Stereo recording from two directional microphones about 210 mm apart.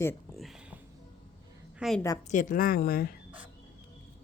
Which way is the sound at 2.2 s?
35° left (ahead or behind).